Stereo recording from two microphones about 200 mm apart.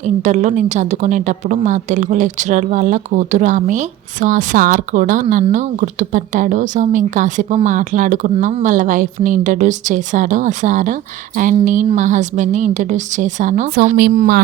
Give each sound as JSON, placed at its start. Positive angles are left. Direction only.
{"t": 0.0, "sound": "a woman's voice", "side_deg": -40}